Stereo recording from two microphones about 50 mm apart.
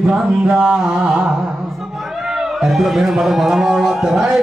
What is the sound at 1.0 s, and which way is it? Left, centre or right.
Carnatic music, right.